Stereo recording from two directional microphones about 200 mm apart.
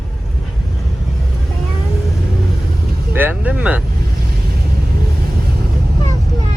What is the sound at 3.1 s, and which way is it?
Speech, 10° right (ahead or behind).